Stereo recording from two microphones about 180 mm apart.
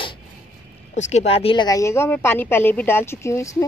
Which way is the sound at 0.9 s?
40° left (ahead or behind).